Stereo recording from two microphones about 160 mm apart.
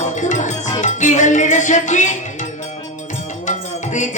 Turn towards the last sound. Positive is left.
turn(degrees=50)  # may be behind; listen again after turning